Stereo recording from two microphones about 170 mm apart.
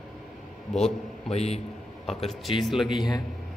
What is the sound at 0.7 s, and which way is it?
Speech, 40° left (ahead or behind).